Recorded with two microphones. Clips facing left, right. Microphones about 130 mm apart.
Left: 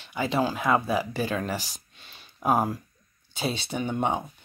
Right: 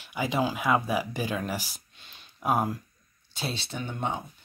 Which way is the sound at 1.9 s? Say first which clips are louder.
Left 2 dB; 5° left (ahead or behind).